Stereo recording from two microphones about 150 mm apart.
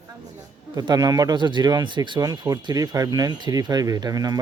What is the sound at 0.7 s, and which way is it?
Speech, 25° right (ahead or behind).